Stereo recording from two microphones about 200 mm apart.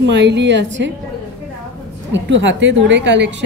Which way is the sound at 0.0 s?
60° right (ahead or behind).